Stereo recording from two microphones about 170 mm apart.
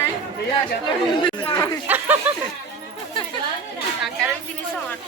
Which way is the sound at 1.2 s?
25° left (ahead or behind).